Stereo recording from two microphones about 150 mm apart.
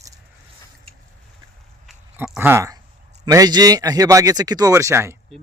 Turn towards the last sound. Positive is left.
turn(degrees=-15)  # may be behind; listen again after turning